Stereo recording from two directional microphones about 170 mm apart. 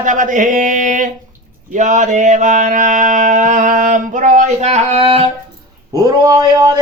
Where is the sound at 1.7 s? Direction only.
45° right (ahead or behind).